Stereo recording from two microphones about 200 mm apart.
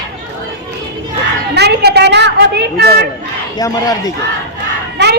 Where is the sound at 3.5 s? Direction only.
20° left (ahead or behind).